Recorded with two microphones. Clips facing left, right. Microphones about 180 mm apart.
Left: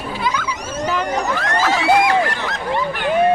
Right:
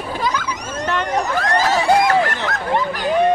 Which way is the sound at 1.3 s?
35° right (ahead or behind).